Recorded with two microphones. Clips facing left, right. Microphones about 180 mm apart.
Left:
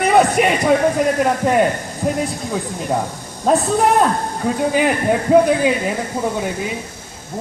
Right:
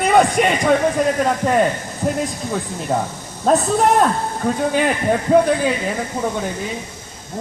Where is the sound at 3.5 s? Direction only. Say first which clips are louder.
Even; 5° left (ahead or behind).